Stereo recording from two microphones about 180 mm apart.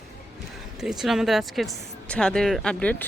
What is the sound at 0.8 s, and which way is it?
Speech, 5° right (ahead or behind).